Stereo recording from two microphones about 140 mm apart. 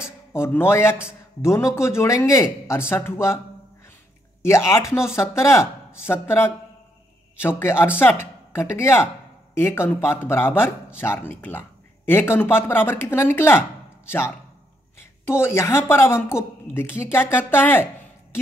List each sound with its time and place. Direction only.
0.3 s a woman's voice: 15° left (ahead or behind)
4.4 s a woman's voice: 20° left (ahead or behind)